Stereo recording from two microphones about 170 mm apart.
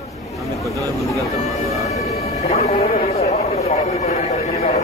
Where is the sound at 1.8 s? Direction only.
40° left (ahead or behind).